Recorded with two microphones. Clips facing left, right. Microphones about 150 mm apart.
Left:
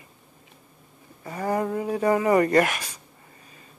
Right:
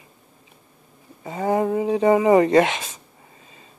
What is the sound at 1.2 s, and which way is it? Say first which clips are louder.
Speech: right 4 dB; 20° right (ahead or behind).